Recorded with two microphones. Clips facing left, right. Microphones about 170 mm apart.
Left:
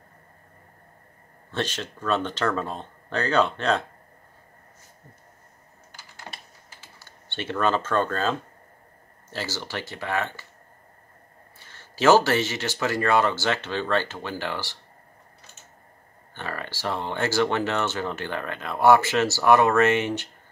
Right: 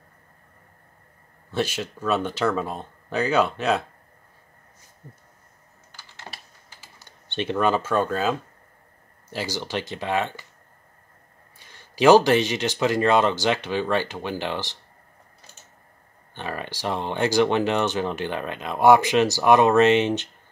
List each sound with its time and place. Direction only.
1.5 s speech: 10° right (ahead or behind)
7.0 s speech: 20° right (ahead or behind)
11.5 s speech: 15° right (ahead or behind)
16.3 s speech: 15° right (ahead or behind)